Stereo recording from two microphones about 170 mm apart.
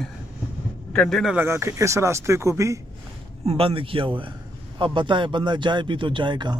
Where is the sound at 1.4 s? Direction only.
15° right (ahead or behind).